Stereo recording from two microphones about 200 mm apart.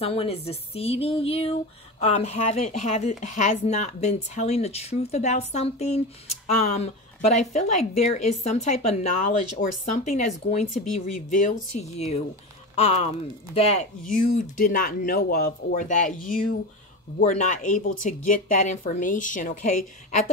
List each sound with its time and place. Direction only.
0.0 s speech: 30° left (ahead or behind)